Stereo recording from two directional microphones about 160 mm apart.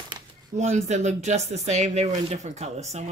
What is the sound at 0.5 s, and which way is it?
A woman's voice, 45° right (ahead or behind).